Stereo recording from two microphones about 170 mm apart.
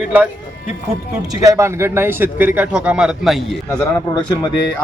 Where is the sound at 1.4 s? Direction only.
20° right (ahead or behind); by 3.5 s centre (ahead or behind).